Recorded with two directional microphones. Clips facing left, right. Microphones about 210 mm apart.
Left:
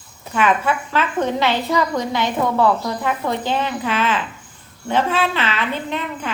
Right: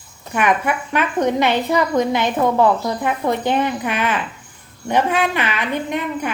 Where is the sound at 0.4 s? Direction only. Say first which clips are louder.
Even; 15° right (ahead or behind).